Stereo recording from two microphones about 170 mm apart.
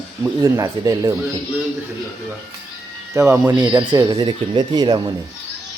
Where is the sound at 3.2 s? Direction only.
15° right (ahead or behind).